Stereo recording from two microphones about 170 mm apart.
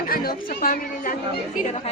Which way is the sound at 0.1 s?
60° left (ahead or behind).